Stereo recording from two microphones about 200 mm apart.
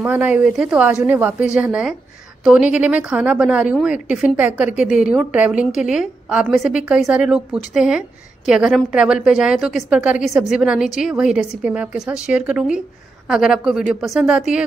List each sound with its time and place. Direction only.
0.0 s a woman's voice: 10° right (ahead or behind)